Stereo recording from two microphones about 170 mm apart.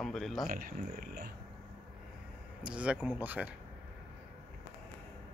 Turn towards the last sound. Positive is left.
turn(degrees=-10)  # may be behind; listen again after turning